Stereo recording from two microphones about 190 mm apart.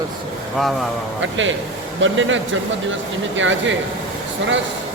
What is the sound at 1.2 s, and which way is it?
Speech, 80° right.